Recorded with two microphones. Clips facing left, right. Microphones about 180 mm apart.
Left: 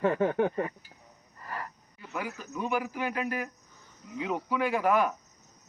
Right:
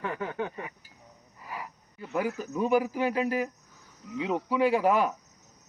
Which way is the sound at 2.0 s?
40° right (ahead or behind).